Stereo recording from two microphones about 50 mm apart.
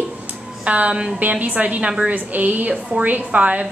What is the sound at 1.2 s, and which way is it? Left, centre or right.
A woman's voice, right.